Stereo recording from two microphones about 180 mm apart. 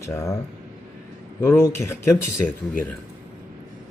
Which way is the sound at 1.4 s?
15° left (ahead or behind).